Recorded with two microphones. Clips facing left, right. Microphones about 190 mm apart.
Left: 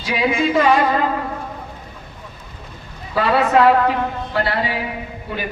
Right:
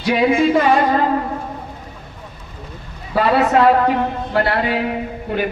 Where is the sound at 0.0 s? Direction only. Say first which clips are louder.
Right 5 dB; 50° right (ahead or behind).